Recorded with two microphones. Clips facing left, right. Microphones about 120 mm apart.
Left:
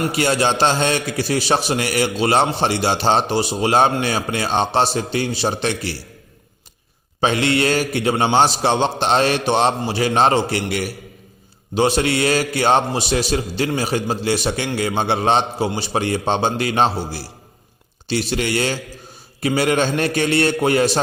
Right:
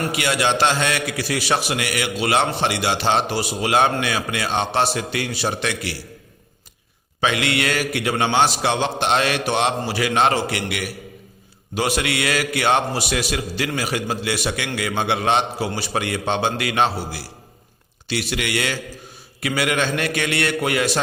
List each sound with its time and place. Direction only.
0.1 s a man's voice: 35° left (ahead or behind)
7.2 s a man's voice: 30° left (ahead or behind)